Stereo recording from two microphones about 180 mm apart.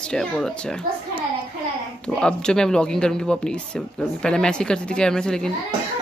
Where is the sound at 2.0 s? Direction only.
5° left (ahead or behind).